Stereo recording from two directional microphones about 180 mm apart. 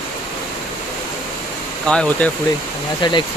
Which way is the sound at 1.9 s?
5° left (ahead or behind).